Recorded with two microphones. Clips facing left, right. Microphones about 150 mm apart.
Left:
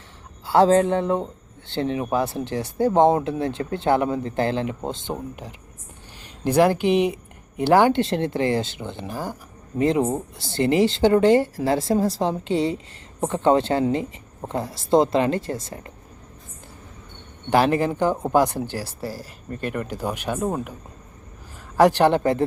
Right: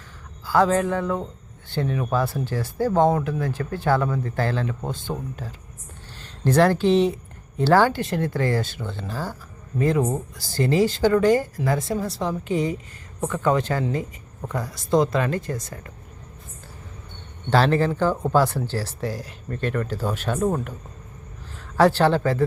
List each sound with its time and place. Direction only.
0.4 s speech: 25° left (ahead or behind)
17.5 s speech: 15° left (ahead or behind)
21.8 s speech: 15° left (ahead or behind)